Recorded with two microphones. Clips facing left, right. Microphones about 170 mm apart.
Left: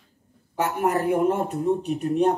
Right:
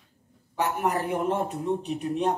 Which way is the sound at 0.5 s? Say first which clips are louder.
Left 3 dB; 50° left (ahead or behind).